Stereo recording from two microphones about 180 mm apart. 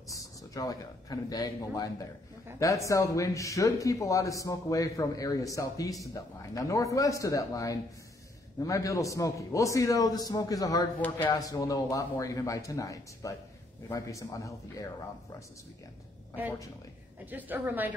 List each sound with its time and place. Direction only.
0.1 s a man's voice: 20° left (ahead or behind)
17.3 s a woman's voice: 10° right (ahead or behind)